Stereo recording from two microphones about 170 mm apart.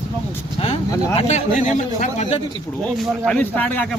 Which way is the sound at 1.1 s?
40° left (ahead or behind).